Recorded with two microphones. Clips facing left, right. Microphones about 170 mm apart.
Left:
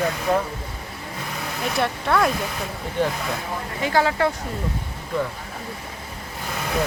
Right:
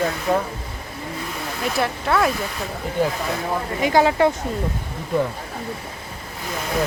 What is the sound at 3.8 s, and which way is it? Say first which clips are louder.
Speech: right 4 dB; 15° right (ahead or behind).